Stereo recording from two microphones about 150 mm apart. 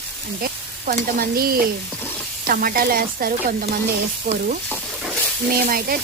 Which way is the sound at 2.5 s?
75° right (ahead or behind).